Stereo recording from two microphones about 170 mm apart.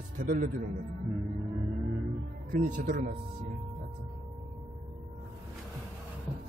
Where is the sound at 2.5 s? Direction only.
50° right (ahead or behind).